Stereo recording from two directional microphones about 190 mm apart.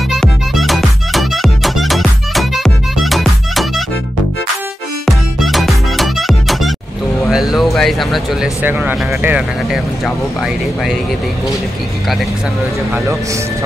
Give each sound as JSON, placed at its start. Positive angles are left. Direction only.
{"t": 0.1, "sound": "music", "side_deg": 0}
{"t": 5.0, "sound": "music", "side_deg": 0}
{"t": 7.2, "sound": "speech", "side_deg": 0}